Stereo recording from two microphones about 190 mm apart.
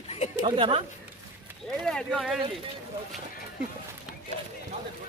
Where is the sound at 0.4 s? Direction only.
25° right (ahead or behind).